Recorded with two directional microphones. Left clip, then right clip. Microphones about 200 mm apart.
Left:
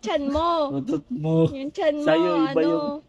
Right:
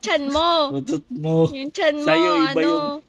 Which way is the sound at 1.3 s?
40° right (ahead or behind).